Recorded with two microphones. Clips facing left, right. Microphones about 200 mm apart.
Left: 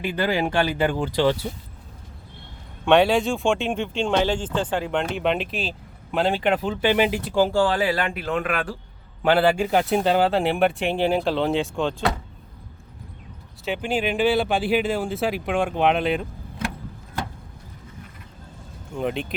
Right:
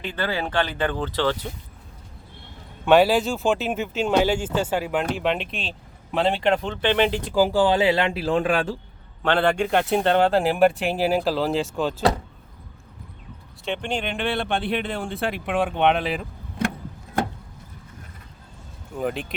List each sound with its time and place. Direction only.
0.0 s speech: 10° left (ahead or behind)
2.8 s speech: 5° right (ahead or behind)
7.3 s speech: 15° right (ahead or behind); by 8.7 s 30° right (ahead or behind)
9.2 s speech: 5° left (ahead or behind)
13.7 s speech: 5° left (ahead or behind)
18.9 s speech: centre (ahead or behind)